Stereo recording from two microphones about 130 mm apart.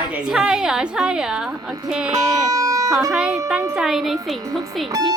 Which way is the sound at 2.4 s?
25° right (ahead or behind).